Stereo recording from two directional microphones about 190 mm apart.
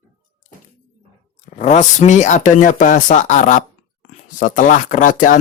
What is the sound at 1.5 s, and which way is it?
Speech, 40° left (ahead or behind).